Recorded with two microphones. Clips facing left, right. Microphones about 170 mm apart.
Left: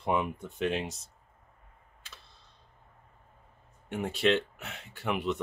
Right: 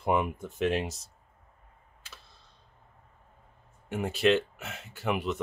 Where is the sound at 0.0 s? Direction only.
5° right (ahead or behind).